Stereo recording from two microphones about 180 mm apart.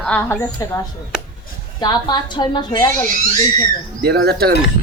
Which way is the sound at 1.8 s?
25° left (ahead or behind).